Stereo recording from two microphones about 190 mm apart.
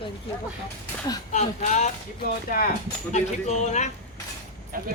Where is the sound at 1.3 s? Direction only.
40° left (ahead or behind).